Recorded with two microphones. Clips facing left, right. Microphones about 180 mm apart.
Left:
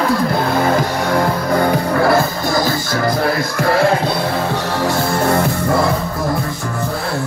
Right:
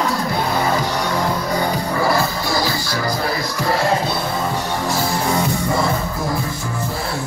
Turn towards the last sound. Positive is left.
turn(degrees=60)  # may be behind; listen again after turning